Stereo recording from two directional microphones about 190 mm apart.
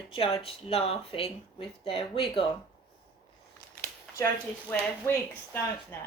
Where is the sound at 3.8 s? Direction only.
15° left (ahead or behind).